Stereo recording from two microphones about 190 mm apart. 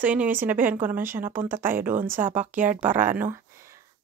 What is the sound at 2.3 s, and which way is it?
Speech, 40° right (ahead or behind).